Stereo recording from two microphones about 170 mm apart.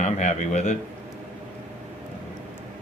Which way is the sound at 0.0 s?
45° left (ahead or behind).